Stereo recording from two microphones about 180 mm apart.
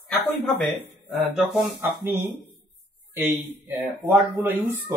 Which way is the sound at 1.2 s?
Centre (ahead or behind).